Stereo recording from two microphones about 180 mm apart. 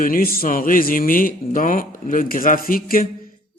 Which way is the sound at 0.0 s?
50° left (ahead or behind).